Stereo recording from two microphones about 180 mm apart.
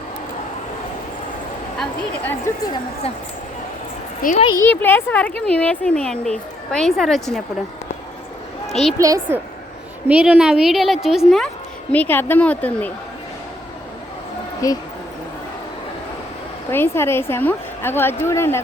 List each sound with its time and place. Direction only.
1.8 s a woman's voice: 10° left (ahead or behind)
4.5 s speech: 10° left (ahead or behind)
9.0 s a woman's voice: 15° right (ahead or behind)
10.1 s a woman's voice: 5° right (ahead or behind)
14.6 s speech: 20° left (ahead or behind)
16.7 s a woman's voice: 15° left (ahead or behind)